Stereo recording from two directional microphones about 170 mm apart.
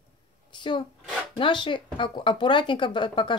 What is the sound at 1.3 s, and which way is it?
Speech, 30° left (ahead or behind).